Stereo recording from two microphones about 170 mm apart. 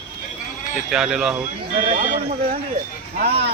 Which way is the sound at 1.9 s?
45° right (ahead or behind).